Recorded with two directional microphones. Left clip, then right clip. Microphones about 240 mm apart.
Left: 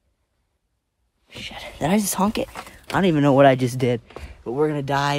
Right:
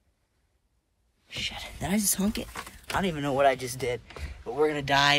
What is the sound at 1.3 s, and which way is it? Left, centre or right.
Speech, left.